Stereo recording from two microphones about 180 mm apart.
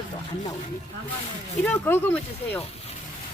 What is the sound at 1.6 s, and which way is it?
Speech, 10° left (ahead or behind).